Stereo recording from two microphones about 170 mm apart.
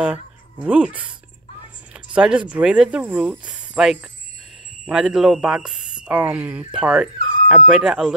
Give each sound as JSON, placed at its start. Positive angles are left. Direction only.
{"t": 0.0, "sound": "speech", "side_deg": -5}
{"t": 2.1, "sound": "speech", "side_deg": -5}